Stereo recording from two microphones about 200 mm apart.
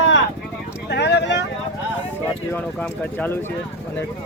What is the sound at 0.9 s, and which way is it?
Speech, 55° left (ahead or behind).